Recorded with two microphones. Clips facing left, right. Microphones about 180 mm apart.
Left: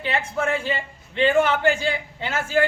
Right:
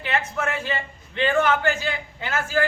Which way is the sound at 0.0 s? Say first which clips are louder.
Left 1 dB; 30° left (ahead or behind).